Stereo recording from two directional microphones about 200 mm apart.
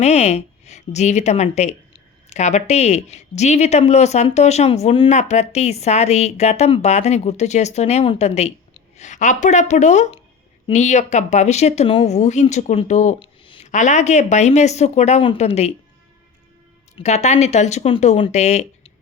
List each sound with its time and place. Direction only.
0.0 s a woman's voice: 35° left (ahead or behind)
17.0 s speech: 35° left (ahead or behind)